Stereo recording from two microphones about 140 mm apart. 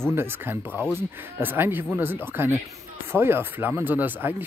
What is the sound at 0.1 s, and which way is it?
Speech, 15° right (ahead or behind).